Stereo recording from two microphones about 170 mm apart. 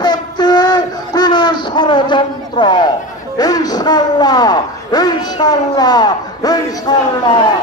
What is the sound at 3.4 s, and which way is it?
A man's voice, 20° left (ahead or behind).